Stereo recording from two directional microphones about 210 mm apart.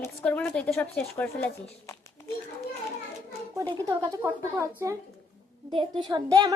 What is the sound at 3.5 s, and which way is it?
Speech, 15° right (ahead or behind).